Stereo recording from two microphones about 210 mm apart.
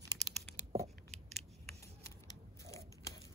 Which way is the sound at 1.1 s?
30° right (ahead or behind).